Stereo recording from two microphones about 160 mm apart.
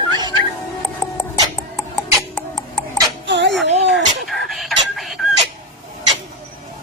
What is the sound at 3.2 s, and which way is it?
Music, 90° right.